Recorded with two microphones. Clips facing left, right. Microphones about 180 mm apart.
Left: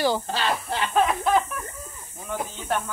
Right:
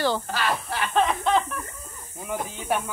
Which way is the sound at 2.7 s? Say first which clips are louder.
Right 1 dB; 10° right (ahead or behind).